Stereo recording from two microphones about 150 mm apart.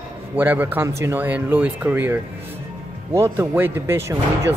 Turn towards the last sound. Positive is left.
turn(degrees=-15)  # may be behind; listen again after turning